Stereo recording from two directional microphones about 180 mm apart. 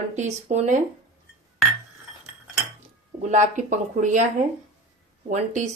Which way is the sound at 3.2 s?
40° right (ahead or behind).